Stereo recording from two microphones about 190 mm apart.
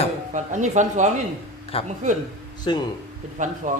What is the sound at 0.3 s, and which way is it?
Speech, 40° right (ahead or behind).